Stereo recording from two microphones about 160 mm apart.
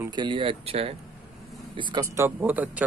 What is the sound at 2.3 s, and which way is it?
Speech, 10° right (ahead or behind).